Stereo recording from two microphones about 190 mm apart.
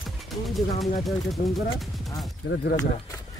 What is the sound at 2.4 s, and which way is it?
Speech, 75° left (ahead or behind).